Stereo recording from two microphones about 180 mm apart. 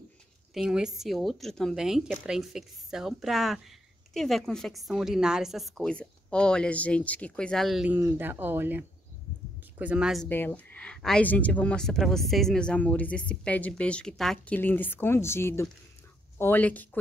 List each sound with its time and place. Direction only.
0.6 s a woman's voice: 5° right (ahead or behind)
10.2 s speech: 10° left (ahead or behind)